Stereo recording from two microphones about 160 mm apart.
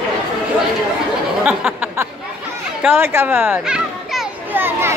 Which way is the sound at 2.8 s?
10° right (ahead or behind).